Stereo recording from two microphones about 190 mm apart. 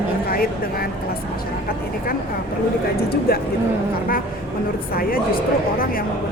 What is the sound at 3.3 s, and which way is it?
Speech, 55° left (ahead or behind).